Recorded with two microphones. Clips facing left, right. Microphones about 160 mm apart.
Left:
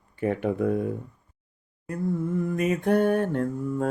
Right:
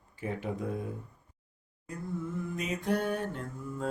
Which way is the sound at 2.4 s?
55° left (ahead or behind).